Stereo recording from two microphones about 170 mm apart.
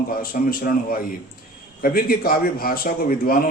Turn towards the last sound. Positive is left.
turn(degrees=60)  # may be behind; listen again after turning